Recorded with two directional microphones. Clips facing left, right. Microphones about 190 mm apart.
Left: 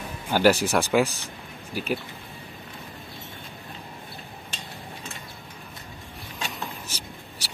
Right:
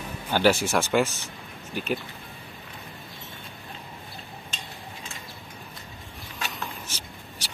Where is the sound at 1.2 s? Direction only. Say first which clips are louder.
Left 1 dB; 5° left (ahead or behind).